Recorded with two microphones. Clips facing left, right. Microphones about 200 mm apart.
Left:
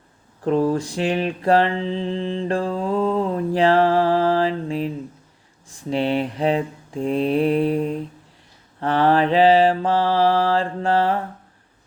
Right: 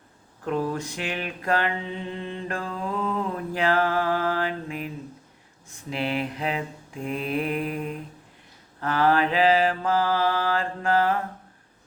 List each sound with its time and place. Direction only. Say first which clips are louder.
0.4 s mantra: left 8 dB; 35° left (ahead or behind)